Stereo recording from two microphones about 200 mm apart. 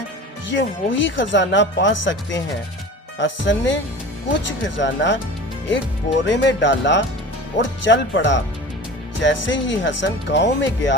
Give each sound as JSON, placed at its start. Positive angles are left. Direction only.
{"t": 0.5, "sound": "speech", "side_deg": 70}